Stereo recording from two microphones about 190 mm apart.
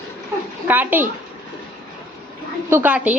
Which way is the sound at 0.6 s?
10° right (ahead or behind).